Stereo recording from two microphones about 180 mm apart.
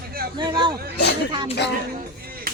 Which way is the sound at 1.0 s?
70° left (ahead or behind).